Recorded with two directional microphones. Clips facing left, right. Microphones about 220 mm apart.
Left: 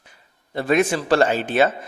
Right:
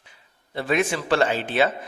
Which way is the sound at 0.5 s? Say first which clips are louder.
Left 4 dB; 45° left (ahead or behind).